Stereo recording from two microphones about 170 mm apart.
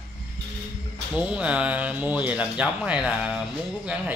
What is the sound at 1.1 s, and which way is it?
Speech, 5° right (ahead or behind).